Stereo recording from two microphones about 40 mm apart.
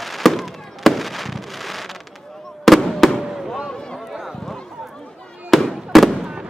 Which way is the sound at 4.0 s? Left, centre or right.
Centre.